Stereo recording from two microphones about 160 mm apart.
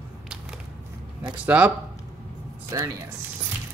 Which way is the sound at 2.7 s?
20° right (ahead or behind).